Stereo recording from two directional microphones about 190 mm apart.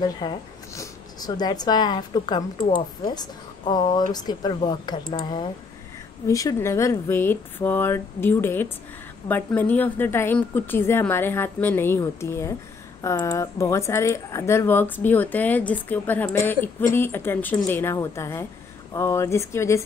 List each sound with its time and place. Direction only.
0.0 s speech: 20° left (ahead or behind)